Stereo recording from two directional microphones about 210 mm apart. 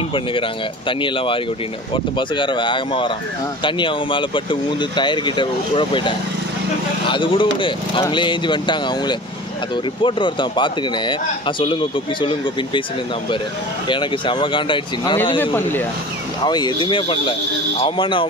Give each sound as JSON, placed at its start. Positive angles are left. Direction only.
{"t": 0.1, "sound": "speech", "side_deg": 25}
{"t": 13.8, "sound": "speech", "side_deg": 25}
{"t": 15.3, "sound": "speech", "side_deg": 10}
{"t": 16.4, "sound": "speech", "side_deg": 20}